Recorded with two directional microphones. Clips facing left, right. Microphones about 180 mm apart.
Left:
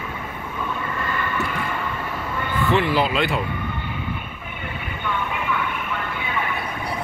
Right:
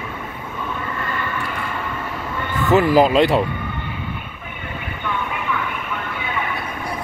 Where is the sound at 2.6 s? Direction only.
40° right (ahead or behind).